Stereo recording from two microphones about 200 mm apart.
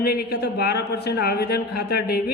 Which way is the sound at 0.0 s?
50° left (ahead or behind).